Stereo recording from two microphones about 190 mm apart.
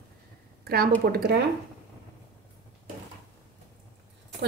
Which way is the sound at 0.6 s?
55° right (ahead or behind).